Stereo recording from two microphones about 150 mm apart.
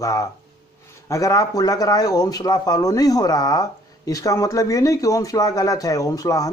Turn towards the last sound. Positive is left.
turn(degrees=25)  # may be behind; listen again after turning